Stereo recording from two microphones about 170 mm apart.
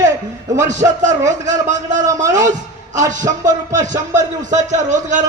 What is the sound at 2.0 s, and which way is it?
Speech, 20° right (ahead or behind).